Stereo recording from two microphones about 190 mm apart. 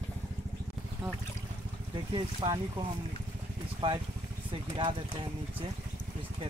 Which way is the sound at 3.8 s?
25° right (ahead or behind).